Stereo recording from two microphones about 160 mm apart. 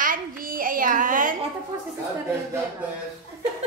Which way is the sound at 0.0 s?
60° right (ahead or behind).